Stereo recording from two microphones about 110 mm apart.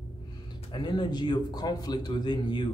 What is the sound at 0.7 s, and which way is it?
A man's voice, 45° left (ahead or behind).